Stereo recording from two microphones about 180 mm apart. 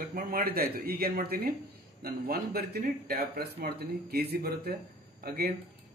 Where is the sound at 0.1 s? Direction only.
55° right (ahead or behind).